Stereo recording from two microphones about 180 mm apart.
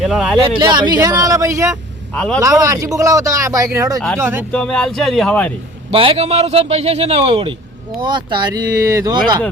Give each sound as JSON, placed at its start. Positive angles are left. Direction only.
{"t": 0.0, "sound": "speech", "side_deg": 0}
{"t": 0.3, "sound": "a man's voice", "side_deg": -25}
{"t": 2.1, "sound": "speech", "side_deg": 5}
{"t": 2.4, "sound": "speech", "side_deg": -20}
{"t": 4.5, "sound": "speech", "side_deg": 5}
{"t": 5.9, "sound": "a man's voice", "side_deg": -30}